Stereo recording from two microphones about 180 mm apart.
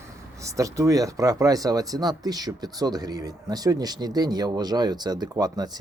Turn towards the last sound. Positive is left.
turn(degrees=-20)  # may be behind; listen again after turning